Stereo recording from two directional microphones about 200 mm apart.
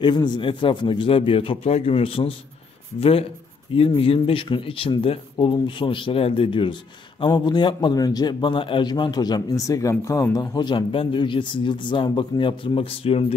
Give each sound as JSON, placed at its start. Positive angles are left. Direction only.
{"t": 0.0, "sound": "a man's voice", "side_deg": 20}